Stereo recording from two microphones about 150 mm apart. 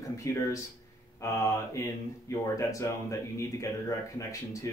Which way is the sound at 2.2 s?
20° left (ahead or behind).